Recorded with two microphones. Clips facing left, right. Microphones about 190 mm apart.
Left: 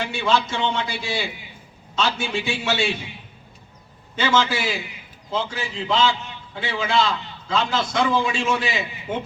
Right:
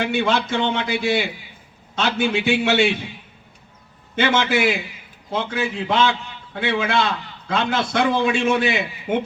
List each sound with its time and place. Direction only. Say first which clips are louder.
0.0 s a man's voice: right 2 dB; 55° right (ahead or behind)
4.1 s a man's voice: right 2 dB; 60° right (ahead or behind)